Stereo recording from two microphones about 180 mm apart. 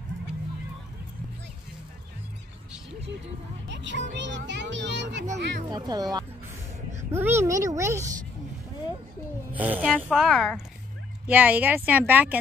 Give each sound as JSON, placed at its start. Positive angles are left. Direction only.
{"t": 3.6, "sound": "speech", "side_deg": -85}
{"t": 5.7, "sound": "speech", "side_deg": -20}
{"t": 7.1, "sound": "a woman's voice", "side_deg": -15}
{"t": 9.5, "sound": "a woman's voice", "side_deg": -10}